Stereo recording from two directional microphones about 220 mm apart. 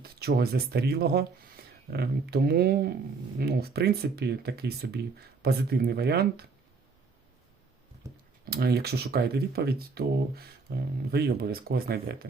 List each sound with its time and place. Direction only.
0.0 s speech: 45° right (ahead or behind)
8.4 s speech: 45° right (ahead or behind)